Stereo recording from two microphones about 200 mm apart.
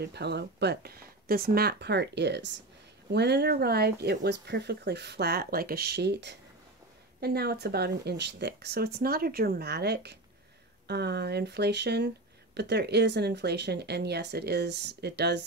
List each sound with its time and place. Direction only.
0.0 s speech: 55° right (ahead or behind)